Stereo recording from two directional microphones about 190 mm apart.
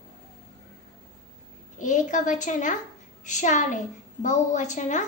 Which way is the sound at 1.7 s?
40° left (ahead or behind).